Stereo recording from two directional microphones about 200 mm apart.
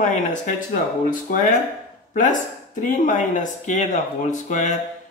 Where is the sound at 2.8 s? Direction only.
40° left (ahead or behind).